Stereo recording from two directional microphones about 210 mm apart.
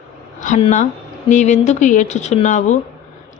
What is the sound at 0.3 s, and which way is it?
Speech, 35° left (ahead or behind).